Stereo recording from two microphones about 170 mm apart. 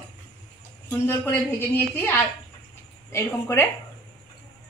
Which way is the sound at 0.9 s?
15° left (ahead or behind).